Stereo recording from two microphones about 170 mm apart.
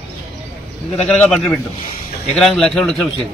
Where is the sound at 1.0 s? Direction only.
5° left (ahead or behind).